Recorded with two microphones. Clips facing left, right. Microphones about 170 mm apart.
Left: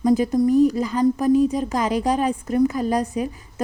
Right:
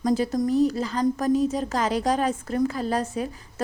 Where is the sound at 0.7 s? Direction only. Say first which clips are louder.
Left 4 dB; 15° left (ahead or behind).